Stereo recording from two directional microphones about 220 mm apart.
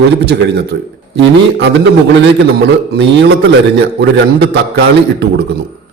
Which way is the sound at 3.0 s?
50° right (ahead or behind).